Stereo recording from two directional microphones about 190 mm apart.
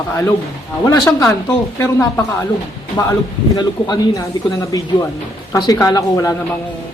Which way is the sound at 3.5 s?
20° left (ahead or behind).